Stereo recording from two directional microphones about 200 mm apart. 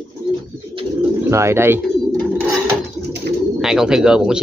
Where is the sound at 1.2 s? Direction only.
15° right (ahead or behind).